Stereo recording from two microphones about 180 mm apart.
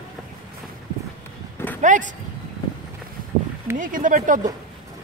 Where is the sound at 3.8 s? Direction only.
50° right (ahead or behind).